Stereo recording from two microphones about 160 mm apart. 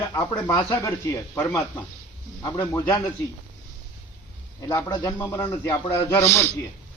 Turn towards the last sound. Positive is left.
turn(degrees=15)  # may be behind; listen again after turning